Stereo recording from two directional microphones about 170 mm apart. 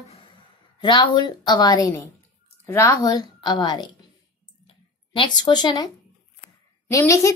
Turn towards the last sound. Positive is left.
turn(degrees=20)  # may be behind; listen again after turning